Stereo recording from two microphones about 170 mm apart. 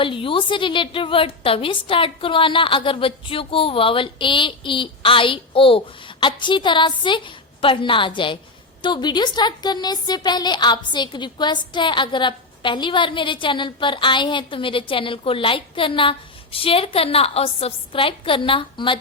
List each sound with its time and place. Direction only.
0.0 s a woman's voice: 30° left (ahead or behind)